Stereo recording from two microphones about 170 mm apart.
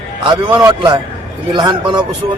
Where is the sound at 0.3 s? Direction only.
25° right (ahead or behind).